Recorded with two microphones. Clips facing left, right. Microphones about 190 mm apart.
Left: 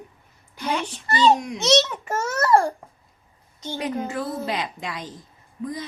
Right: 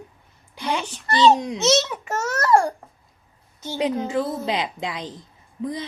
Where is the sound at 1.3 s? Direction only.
25° right (ahead or behind).